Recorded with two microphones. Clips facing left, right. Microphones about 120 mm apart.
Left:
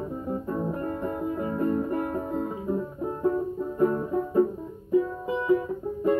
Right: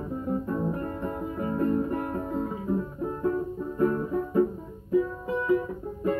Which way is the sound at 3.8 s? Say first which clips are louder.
Left 1 dB; 20° left (ahead or behind).